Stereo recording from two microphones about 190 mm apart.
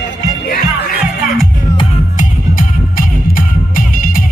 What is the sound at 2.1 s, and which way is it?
Music, 45° left (ahead or behind).